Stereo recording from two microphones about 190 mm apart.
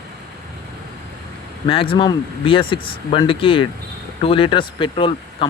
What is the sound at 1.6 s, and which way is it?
Speech, 30° left (ahead or behind).